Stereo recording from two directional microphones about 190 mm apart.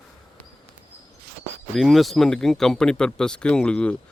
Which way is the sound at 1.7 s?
Centre (ahead or behind).